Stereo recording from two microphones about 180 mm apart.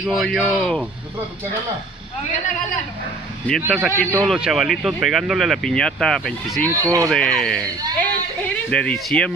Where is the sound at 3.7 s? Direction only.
Centre (ahead or behind).